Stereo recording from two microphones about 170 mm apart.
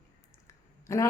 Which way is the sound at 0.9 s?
15° left (ahead or behind).